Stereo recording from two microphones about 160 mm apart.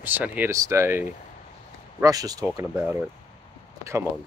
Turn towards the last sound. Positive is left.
turn(degrees=-20)  # may be behind; listen again after turning